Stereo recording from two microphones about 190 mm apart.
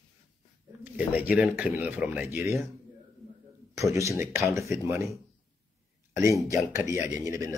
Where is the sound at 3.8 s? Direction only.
15° right (ahead or behind).